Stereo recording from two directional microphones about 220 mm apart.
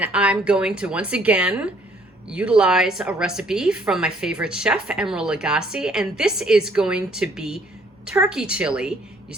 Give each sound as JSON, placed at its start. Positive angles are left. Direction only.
{"t": 0.0, "sound": "a woman's voice", "side_deg": -5}